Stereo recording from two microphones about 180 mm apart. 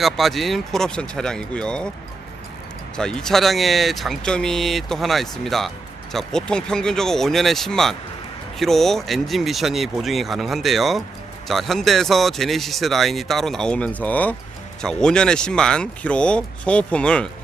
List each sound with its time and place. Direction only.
0.0 s speech: centre (ahead or behind)
2.9 s speech: 5° left (ahead or behind)